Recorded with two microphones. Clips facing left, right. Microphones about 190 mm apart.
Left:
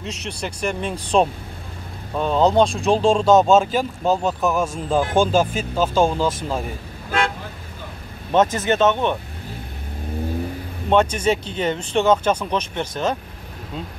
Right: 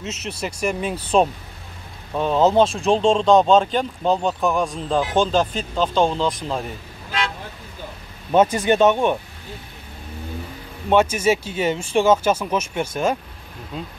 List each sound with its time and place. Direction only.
0.0 s speech: 5° right (ahead or behind)
7.1 s toot: 50° left (ahead or behind)
8.3 s speech: 10° right (ahead or behind)
10.9 s speech: 5° right (ahead or behind)